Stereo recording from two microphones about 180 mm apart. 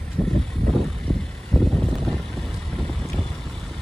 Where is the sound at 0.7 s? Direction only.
5° left (ahead or behind).